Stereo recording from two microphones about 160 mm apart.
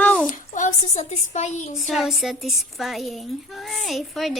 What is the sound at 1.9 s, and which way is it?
Speech, centre (ahead or behind).